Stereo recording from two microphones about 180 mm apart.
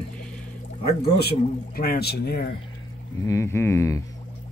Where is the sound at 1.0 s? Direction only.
60° left (ahead or behind).